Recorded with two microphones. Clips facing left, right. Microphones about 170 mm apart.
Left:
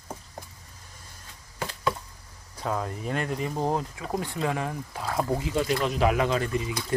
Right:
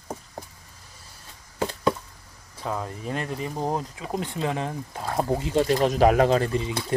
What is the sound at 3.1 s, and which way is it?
Speech, 35° right (ahead or behind).